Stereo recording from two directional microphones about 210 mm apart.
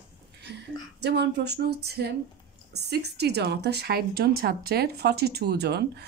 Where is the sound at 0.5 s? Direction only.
50° right (ahead or behind).